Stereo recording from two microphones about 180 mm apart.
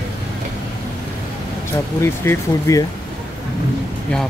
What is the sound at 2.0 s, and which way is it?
Speech, 15° left (ahead or behind).